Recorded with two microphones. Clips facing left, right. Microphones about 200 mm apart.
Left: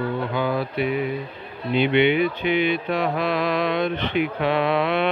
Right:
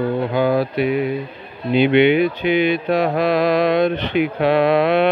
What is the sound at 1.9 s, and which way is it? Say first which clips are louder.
Speech: right 4 dB; 90° right.